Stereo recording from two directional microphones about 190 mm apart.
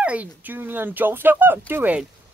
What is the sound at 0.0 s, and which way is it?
Speech, 5° right (ahead or behind).